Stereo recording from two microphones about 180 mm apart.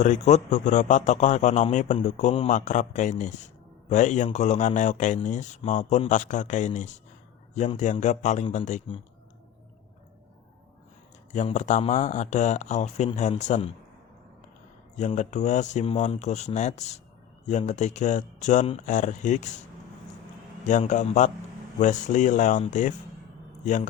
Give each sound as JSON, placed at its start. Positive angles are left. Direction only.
{"t": 0.0, "sound": "a man's voice", "side_deg": 40}
{"t": 11.3, "sound": "a man's voice", "side_deg": 40}
{"t": 14.9, "sound": "a man's voice", "side_deg": 40}
{"t": 20.7, "sound": "speech", "side_deg": 45}